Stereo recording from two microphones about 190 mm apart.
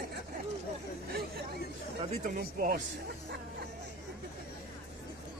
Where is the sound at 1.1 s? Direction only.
55° right (ahead or behind).